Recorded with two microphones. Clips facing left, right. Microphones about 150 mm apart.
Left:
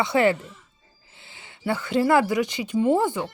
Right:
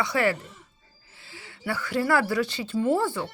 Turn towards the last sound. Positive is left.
turn(degrees=20)  # may be behind; listen again after turning